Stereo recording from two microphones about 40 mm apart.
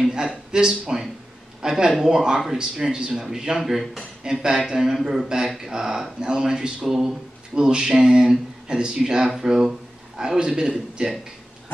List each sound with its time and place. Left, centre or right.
0.1 s speech: centre